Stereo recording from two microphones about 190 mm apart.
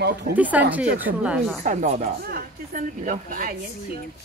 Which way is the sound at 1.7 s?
40° right (ahead or behind).